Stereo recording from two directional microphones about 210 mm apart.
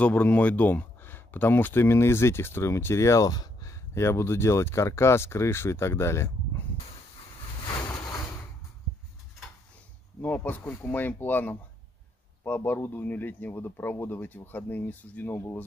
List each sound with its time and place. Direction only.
0.0 s speech: 5° left (ahead or behind)
7.6 s a sound: 15° left (ahead or behind)
10.2 s speech: 10° left (ahead or behind)